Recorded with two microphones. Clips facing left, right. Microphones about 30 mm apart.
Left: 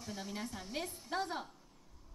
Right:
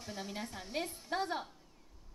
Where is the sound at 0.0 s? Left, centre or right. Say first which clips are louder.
Right 1 dB; centre.